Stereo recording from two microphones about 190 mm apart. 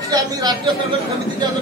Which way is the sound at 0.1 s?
20° right (ahead or behind).